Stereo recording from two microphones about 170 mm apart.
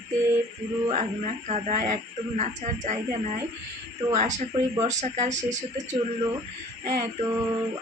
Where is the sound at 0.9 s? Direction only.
40° right (ahead or behind).